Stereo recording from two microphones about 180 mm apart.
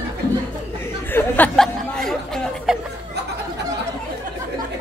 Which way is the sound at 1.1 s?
10° left (ahead or behind).